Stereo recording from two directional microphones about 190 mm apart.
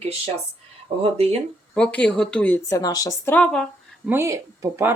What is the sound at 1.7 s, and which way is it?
A woman's voice, 5° left (ahead or behind).